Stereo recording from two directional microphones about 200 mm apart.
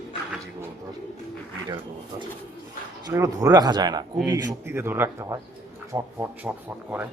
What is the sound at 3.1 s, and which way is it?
Speech, 15° right (ahead or behind).